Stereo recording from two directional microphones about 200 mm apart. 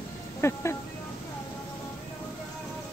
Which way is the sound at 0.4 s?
15° left (ahead or behind).